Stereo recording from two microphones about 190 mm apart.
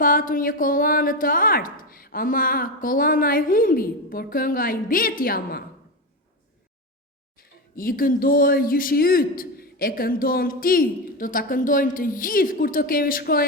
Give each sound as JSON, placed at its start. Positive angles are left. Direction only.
{"t": 0.0, "sound": "speech", "side_deg": 45}
{"t": 7.3, "sound": "speech", "side_deg": 50}